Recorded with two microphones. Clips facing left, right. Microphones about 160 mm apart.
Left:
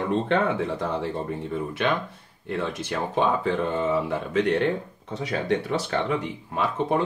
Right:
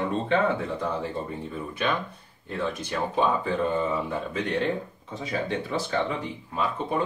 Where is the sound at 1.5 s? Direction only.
80° left.